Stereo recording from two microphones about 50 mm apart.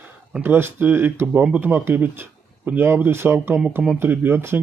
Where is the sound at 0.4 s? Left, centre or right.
Right.